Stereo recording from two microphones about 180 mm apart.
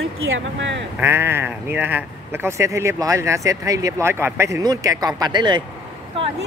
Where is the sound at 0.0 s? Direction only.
90° right.